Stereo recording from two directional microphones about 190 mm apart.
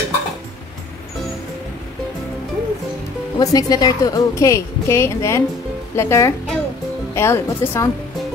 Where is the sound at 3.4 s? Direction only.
20° left (ahead or behind).